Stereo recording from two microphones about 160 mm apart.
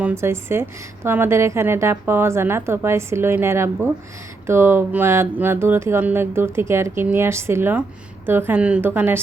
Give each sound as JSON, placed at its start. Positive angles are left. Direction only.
{"t": 0.0, "sound": "a woman's voice", "side_deg": -15}